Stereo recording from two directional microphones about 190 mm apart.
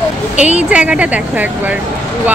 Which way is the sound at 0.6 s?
5° right (ahead or behind).